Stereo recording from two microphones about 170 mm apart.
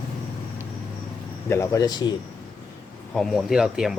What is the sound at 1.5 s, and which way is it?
Speech, 15° left (ahead or behind).